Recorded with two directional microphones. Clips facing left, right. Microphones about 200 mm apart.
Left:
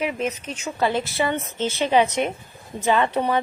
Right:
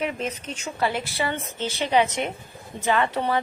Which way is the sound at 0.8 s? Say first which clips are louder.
Left 4 dB; 25° left (ahead or behind).